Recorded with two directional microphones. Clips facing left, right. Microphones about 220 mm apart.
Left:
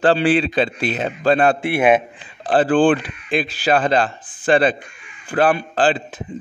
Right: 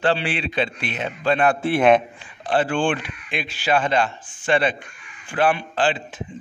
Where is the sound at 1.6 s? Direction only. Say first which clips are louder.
Left 1 dB; 10° left (ahead or behind).